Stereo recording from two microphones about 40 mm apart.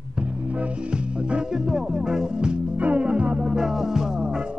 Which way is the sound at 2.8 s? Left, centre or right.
Right.